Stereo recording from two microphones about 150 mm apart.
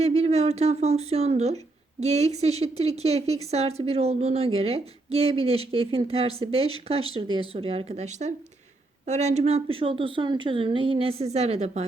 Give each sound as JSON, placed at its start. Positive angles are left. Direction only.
{"t": 0.0, "sound": "a woman's voice", "side_deg": -45}